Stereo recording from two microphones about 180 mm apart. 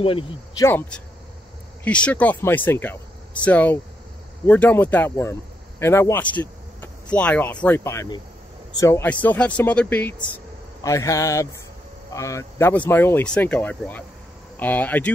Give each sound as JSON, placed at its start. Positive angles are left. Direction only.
{"t": 0.0, "sound": "speech", "side_deg": 30}
{"t": 0.7, "sound": "speech", "side_deg": 10}